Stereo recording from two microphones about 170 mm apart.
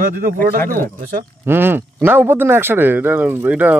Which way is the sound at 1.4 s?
15° right (ahead or behind).